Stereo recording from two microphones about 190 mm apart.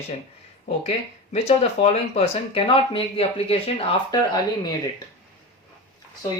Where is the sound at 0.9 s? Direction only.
35° left (ahead or behind).